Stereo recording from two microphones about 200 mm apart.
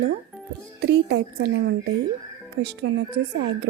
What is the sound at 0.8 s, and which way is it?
A woman's voice, 55° right (ahead or behind).